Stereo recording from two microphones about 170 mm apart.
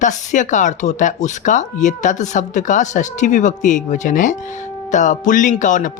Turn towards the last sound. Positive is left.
turn(degrees=50)  # may be behind; listen again after turning